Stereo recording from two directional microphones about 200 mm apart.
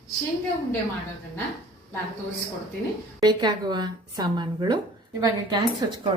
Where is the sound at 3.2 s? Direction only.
20° right (ahead or behind).